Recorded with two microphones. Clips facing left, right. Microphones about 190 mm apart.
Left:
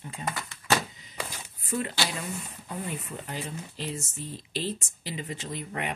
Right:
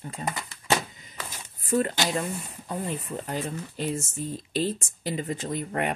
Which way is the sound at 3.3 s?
45° right (ahead or behind).